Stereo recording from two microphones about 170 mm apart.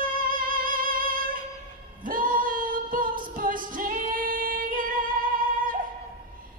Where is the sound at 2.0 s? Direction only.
55° right (ahead or behind).